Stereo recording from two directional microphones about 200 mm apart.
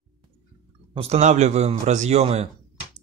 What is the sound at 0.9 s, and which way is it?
Speech, 30° right (ahead or behind).